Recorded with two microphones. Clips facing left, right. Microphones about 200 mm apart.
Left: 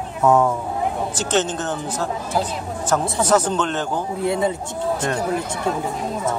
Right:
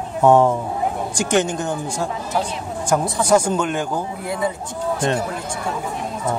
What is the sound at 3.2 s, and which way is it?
Speech, 10° right (ahead or behind).